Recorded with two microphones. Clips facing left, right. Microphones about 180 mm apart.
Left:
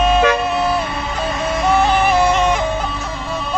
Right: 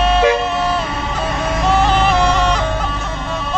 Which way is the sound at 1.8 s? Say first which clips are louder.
Even; 15° left (ahead or behind).